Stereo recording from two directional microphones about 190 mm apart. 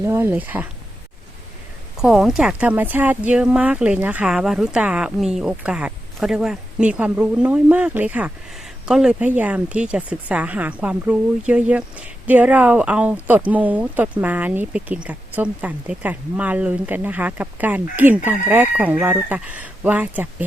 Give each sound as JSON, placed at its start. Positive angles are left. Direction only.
{"t": 0.0, "sound": "speech", "side_deg": -10}
{"t": 2.0, "sound": "speech", "side_deg": 0}